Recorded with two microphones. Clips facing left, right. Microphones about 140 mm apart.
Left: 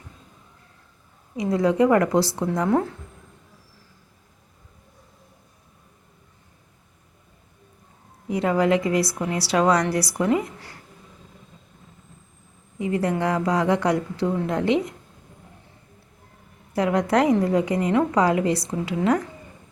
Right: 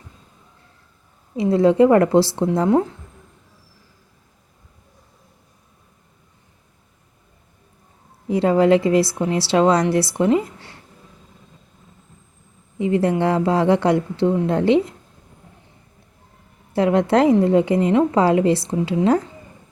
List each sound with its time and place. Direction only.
1.4 s a woman's voice: 25° right (ahead or behind)
8.3 s a woman's voice: 30° right (ahead or behind)
12.8 s a woman's voice: 25° right (ahead or behind)
16.7 s a woman's voice: 25° right (ahead or behind)